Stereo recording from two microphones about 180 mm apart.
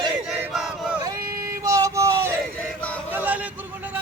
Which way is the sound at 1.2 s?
55° right (ahead or behind).